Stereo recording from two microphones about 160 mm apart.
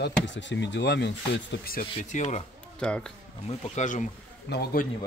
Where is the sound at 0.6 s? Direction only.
90° left; by 1.9 s 70° left (ahead or behind).